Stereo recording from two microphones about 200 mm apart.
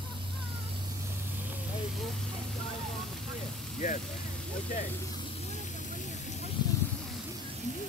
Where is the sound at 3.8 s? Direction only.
40° left (ahead or behind).